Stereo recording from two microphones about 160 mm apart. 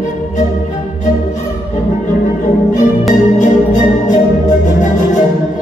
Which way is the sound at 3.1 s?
50° left (ahead or behind).